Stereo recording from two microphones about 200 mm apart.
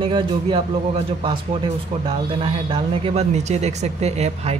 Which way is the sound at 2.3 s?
25° right (ahead or behind).